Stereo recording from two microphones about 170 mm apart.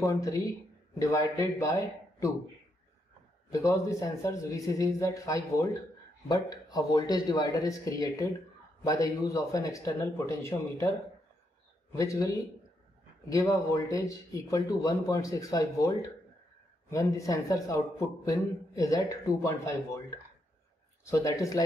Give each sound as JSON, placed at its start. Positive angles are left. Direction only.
{"t": 0.0, "sound": "a man's voice", "side_deg": 20}
{"t": 3.5, "sound": "a man's voice", "side_deg": 20}
{"t": 11.9, "sound": "a man's voice", "side_deg": 20}